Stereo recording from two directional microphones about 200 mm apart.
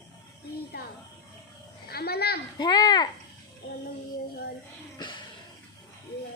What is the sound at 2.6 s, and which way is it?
Speech, 20° left (ahead or behind).